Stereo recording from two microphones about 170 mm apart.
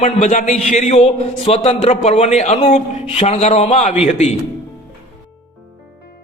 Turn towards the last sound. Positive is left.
turn(degrees=40)  # may be behind; listen again after turning